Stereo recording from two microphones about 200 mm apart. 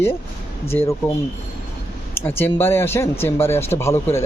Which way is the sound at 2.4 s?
10° left (ahead or behind).